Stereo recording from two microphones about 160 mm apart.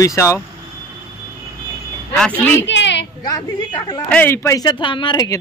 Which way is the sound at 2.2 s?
10° left (ahead or behind).